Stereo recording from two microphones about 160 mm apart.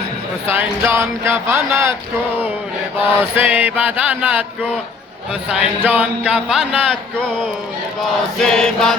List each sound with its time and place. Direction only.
0.5 s music: 15° right (ahead or behind)
3.3 s music: 10° right (ahead or behind)
5.5 s music: 10° right (ahead or behind)
8.0 s chant: 5° left (ahead or behind)